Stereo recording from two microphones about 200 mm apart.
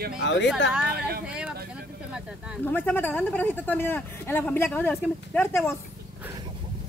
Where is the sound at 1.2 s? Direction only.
5° right (ahead or behind).